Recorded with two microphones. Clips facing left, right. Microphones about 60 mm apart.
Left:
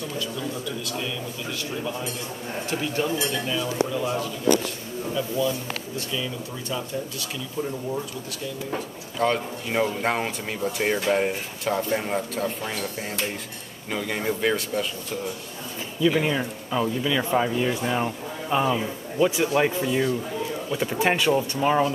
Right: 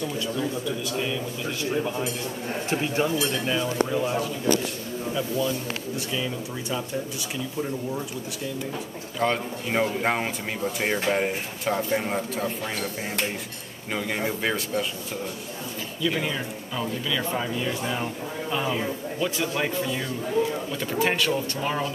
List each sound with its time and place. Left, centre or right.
0.4 s speech: centre
5.9 s speech: centre
9.2 s speech: centre
13.9 s speech: centre
16.1 s speech: centre